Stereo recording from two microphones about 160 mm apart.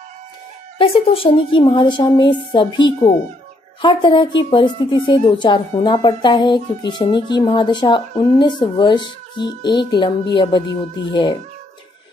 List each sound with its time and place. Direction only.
0.7 s speech: 35° left (ahead or behind)